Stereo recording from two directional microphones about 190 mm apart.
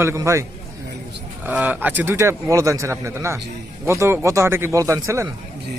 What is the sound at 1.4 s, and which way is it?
Speech, 10° right (ahead or behind).